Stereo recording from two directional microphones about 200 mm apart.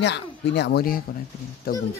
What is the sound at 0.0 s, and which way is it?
A child's voice, 60° left (ahead or behind).